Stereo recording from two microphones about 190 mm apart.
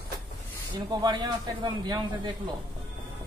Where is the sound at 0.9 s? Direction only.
20° right (ahead or behind).